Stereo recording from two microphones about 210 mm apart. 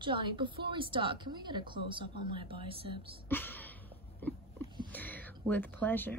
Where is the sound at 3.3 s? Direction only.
10° left (ahead or behind).